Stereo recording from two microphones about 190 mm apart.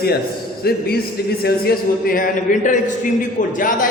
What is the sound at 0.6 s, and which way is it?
A man's voice, 55° left (ahead or behind).